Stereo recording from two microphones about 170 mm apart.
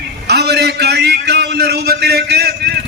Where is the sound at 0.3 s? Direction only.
75° right (ahead or behind).